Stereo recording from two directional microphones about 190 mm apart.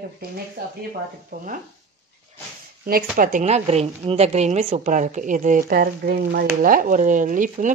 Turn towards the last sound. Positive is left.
turn(degrees=-45)  # may be behind; listen again after turning